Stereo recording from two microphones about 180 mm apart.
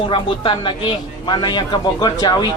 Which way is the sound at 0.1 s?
25° left (ahead or behind).